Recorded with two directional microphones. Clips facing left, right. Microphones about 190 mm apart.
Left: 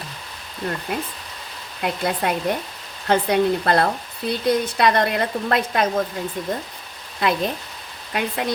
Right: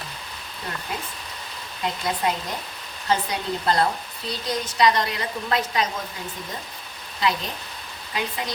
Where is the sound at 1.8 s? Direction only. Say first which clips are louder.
Left 3 dB; 60° left (ahead or behind).